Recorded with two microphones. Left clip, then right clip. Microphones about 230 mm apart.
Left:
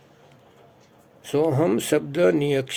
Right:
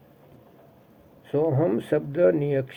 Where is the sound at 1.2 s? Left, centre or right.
Left.